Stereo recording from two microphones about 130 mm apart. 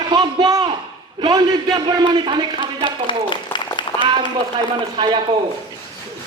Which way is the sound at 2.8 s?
40° left (ahead or behind).